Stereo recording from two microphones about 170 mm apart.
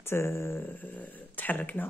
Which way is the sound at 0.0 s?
15° left (ahead or behind).